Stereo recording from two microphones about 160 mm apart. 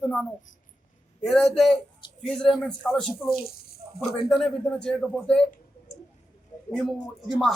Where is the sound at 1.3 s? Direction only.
Centre (ahead or behind).